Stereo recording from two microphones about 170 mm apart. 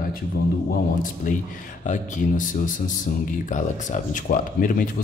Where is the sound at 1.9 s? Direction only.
50° left (ahead or behind).